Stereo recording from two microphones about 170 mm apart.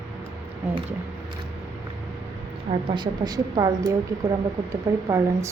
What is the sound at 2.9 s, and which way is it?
A woman's voice, 25° right (ahead or behind).